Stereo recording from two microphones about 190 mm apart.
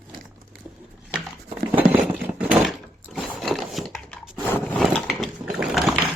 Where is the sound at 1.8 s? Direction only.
10° right (ahead or behind).